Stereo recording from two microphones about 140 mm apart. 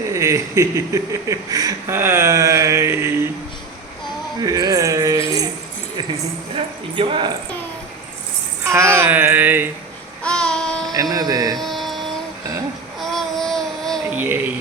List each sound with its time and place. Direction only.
0.1 s speech: 20° right (ahead or behind)
4.4 s speech: 25° right (ahead or behind)
6.6 s speech: 40° right (ahead or behind)
8.6 s a sound: 20° right (ahead or behind)
10.2 s child singing: 5° left (ahead or behind)
10.9 s speech: 25° right (ahead or behind)
11.5 s a sound: centre (ahead or behind)
13.0 s a sound: centre (ahead or behind)
14.1 s speech: 10° right (ahead or behind)